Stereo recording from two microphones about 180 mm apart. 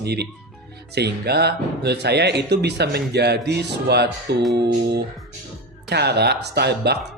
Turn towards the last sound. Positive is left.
turn(degrees=-65)  # may be behind; listen again after turning